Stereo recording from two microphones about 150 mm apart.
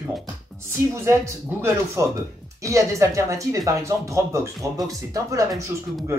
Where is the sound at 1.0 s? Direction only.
20° right (ahead or behind).